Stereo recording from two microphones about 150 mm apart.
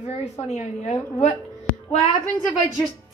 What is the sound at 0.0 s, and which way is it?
Speech, 40° left (ahead or behind).